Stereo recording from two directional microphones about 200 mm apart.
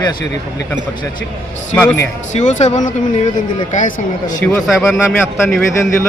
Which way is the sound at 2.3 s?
35° left (ahead or behind).